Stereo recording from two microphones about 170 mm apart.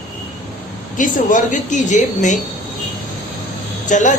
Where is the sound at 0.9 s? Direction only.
50° left (ahead or behind).